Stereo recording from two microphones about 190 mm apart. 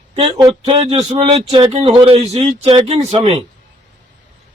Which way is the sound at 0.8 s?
35° right (ahead or behind).